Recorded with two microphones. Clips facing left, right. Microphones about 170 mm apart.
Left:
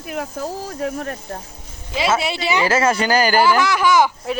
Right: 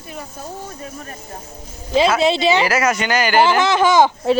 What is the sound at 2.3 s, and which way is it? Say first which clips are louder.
Speech: right 5 dB; 25° right (ahead or behind).